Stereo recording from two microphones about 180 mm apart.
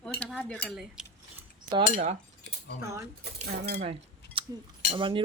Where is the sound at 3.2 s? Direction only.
60° right (ahead or behind).